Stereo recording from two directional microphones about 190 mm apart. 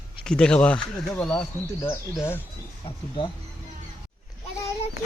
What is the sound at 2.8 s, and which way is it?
Speech, 25° left (ahead or behind).